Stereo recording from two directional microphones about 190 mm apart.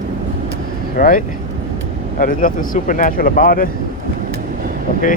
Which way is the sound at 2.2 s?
45° left (ahead or behind).